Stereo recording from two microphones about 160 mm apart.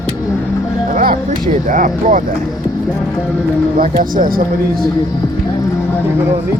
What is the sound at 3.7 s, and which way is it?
Speech, 60° right (ahead or behind).